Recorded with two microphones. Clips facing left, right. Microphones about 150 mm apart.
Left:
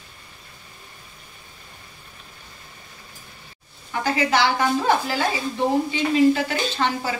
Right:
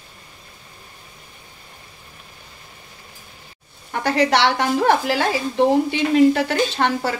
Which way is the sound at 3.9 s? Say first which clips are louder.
Right 3 dB; 65° right (ahead or behind).